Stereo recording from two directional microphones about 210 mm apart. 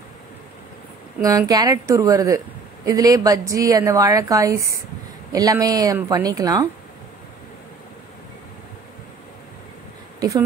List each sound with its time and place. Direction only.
1.2 s a woman's voice: 15° right (ahead or behind)